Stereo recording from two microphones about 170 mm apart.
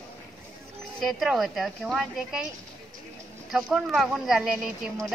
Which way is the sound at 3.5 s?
Centre (ahead or behind).